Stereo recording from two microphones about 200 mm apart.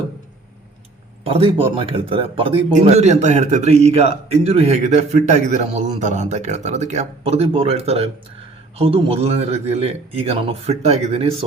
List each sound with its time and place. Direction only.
1.2 s a man's voice: 30° right (ahead or behind)